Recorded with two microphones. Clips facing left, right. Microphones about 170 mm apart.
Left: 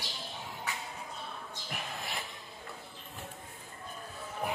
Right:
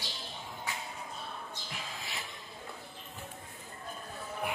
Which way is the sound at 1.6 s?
60° left (ahead or behind).